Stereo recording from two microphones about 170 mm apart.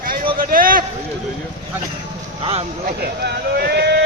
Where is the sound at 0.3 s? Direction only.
55° right (ahead or behind).